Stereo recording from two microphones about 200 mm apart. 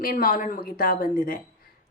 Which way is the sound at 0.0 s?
45° left (ahead or behind).